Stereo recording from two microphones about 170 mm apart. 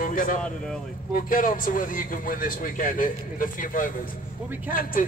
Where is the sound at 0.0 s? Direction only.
50° left (ahead or behind).